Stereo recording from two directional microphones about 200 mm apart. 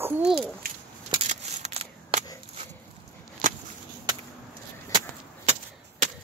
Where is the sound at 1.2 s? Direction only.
30° right (ahead or behind).